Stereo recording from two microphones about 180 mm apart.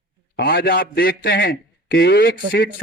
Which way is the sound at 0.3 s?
60° left (ahead or behind).